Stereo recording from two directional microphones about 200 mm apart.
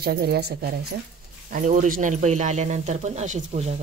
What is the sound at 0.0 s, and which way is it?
Speech, 50° right (ahead or behind).